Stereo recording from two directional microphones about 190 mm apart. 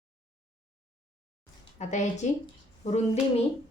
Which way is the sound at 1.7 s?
40° left (ahead or behind).